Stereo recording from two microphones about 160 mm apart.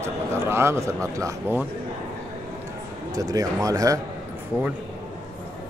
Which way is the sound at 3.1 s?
20° right (ahead or behind).